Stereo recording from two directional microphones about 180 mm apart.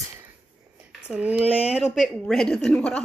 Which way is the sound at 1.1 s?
5° right (ahead or behind).